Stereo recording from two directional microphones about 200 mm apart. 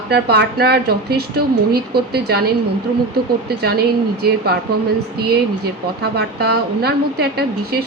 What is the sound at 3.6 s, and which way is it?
Speech, 50° right (ahead or behind).